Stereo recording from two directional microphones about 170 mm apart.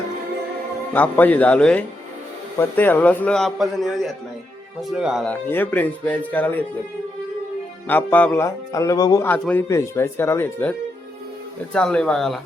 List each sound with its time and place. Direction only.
0.9 s a man's voice: 10° left (ahead or behind)
5.3 s a man's voice: 10° left (ahead or behind)
7.9 s a man's voice: 10° left (ahead or behind)
9.2 s a man's voice: 10° left (ahead or behind)